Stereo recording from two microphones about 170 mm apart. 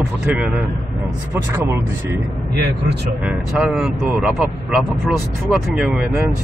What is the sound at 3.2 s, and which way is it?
Speech, 5° right (ahead or behind).